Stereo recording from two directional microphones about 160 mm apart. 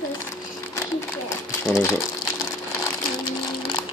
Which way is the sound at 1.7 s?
20° left (ahead or behind).